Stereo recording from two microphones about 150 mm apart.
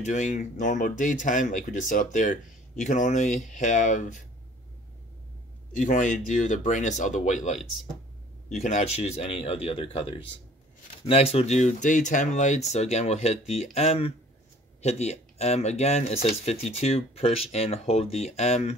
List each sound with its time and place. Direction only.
0.0 s speech: 55° left (ahead or behind)
5.8 s speech: 55° left (ahead or behind)